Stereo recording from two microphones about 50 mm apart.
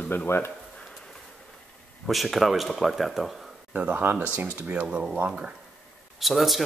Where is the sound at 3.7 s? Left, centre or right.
Right.